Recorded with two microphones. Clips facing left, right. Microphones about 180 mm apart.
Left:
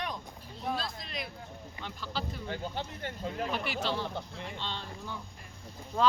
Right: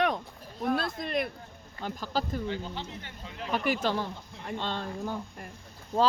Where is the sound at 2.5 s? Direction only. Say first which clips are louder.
Right 1 dB; 45° left (ahead or behind).